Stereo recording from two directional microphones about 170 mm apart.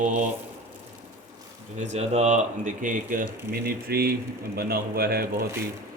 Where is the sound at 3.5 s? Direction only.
65° right (ahead or behind).